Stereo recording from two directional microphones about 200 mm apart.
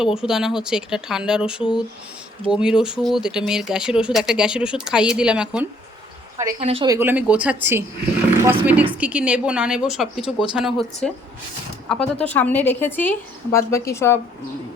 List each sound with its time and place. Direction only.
0.0 s speech: 5° right (ahead or behind)
6.3 s a woman's voice: 15° right (ahead or behind)
6.6 s speech: 30° right (ahead or behind)
6.8 s a woman's voice: 15° right (ahead or behind); by 14.2 s 15° left (ahead or behind)